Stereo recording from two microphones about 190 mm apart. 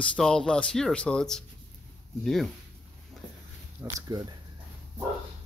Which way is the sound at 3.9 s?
20° right (ahead or behind).